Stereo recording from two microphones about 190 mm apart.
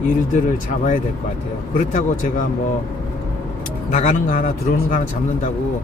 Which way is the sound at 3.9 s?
40° left (ahead or behind).